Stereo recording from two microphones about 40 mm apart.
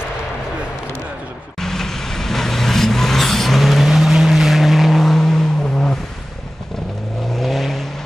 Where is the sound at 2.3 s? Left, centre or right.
Centre.